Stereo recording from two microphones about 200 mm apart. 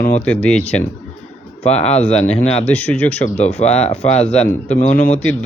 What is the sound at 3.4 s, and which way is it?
Speech, 30° left (ahead or behind).